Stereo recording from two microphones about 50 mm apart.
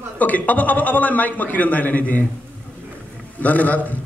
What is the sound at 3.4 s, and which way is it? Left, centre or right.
Speech, left.